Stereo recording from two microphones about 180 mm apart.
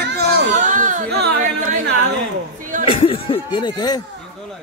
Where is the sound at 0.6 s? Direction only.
45° right (ahead or behind).